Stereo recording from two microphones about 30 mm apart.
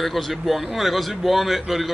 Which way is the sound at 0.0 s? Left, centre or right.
Centre.